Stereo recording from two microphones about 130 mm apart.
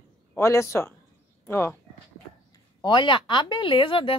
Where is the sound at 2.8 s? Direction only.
40° left (ahead or behind).